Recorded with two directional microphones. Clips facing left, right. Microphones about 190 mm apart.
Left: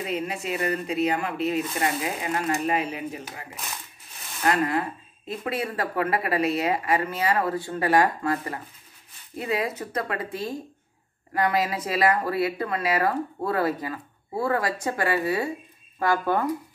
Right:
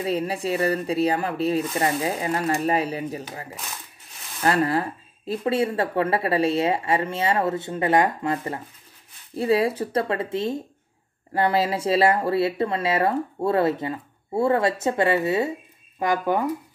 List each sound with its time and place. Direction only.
0.0 s speech: 35° right (ahead or behind); by 16.4 s 15° right (ahead or behind)